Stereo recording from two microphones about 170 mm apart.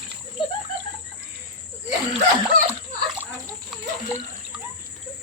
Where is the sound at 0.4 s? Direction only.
25° left (ahead or behind).